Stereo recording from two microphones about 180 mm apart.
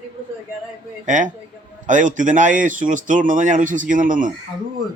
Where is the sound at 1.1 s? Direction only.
45° right (ahead or behind).